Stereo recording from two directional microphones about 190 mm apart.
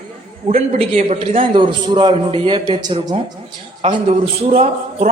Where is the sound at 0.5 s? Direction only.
35° right (ahead or behind).